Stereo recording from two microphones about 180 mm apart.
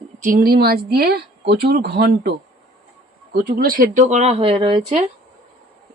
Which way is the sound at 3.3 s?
55° right (ahead or behind).